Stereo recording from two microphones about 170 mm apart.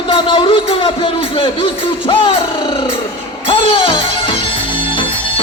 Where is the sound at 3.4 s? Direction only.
30° left (ahead or behind).